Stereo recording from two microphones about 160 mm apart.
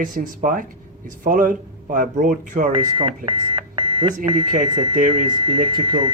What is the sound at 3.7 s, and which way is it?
Alarm clock, 30° right (ahead or behind).